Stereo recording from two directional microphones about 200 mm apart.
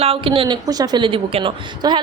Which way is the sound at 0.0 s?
25° right (ahead or behind).